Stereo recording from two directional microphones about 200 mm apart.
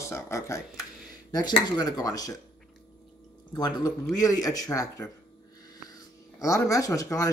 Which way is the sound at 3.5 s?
20° left (ahead or behind).